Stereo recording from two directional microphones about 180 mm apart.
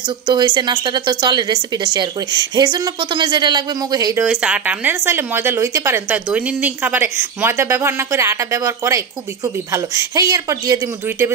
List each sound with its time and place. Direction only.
0.3 s a woman's voice: 25° right (ahead or behind)
4.3 s speech: 5° right (ahead or behind)